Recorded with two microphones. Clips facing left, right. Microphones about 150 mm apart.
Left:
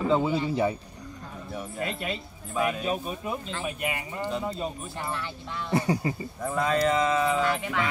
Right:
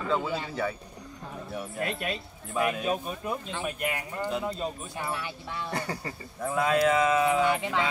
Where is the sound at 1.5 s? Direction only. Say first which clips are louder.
Even; centre (ahead or behind).